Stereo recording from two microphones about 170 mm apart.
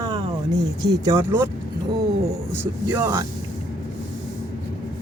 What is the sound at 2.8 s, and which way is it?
Speech, 20° right (ahead or behind).